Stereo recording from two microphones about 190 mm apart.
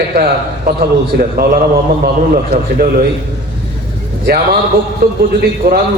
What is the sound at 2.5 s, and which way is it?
Speech, 50° right (ahead or behind).